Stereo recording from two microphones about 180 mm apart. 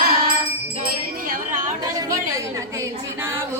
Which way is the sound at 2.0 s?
20° right (ahead or behind).